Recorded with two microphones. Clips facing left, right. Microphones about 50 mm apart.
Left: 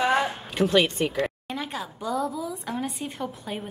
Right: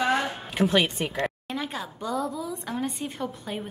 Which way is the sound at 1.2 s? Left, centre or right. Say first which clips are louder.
Right 1 dB; centre.